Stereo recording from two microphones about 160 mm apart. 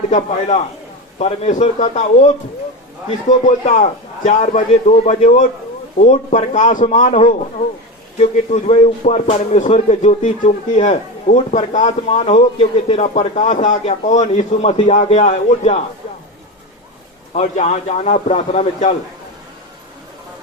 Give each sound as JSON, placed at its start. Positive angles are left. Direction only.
{"t": 0.1, "sound": "a man's voice", "side_deg": 45}
{"t": 17.3, "sound": "a man's voice", "side_deg": 45}